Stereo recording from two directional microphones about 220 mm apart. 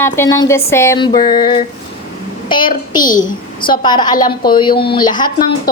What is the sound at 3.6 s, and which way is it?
A woman's voice, 20° left (ahead or behind).